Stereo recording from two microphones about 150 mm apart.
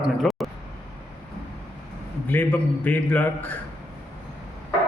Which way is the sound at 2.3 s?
15° left (ahead or behind).